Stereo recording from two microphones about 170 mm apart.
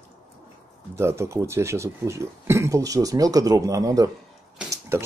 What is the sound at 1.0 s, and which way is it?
Speech, 15° right (ahead or behind).